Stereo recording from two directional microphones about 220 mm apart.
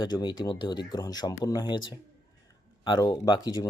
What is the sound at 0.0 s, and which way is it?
A man's voice, 20° left (ahead or behind).